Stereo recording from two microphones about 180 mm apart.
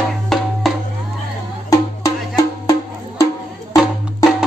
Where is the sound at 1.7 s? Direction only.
20° left (ahead or behind).